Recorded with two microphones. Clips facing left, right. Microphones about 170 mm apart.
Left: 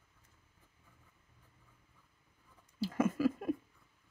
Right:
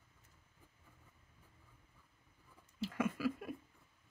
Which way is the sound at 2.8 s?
40° left (ahead or behind).